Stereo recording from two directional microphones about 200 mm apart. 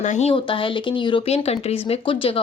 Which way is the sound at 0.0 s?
35° left (ahead or behind).